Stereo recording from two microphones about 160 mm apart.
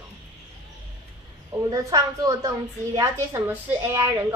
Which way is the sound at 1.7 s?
25° right (ahead or behind).